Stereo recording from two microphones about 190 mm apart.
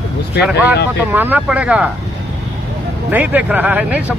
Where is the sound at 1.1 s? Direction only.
10° right (ahead or behind).